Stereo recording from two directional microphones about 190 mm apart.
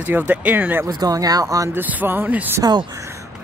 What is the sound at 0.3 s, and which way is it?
Speech, 10° right (ahead or behind).